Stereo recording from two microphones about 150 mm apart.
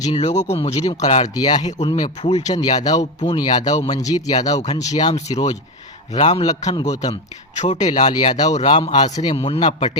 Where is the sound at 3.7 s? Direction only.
50° left (ahead or behind).